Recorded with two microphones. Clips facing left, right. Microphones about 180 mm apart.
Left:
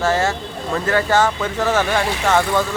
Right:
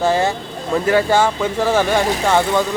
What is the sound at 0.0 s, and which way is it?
Speech, 15° right (ahead or behind).